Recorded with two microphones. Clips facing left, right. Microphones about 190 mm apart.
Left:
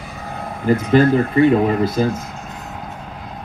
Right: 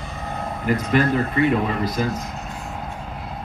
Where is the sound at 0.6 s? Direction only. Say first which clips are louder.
Left 6 dB; 30° left (ahead or behind).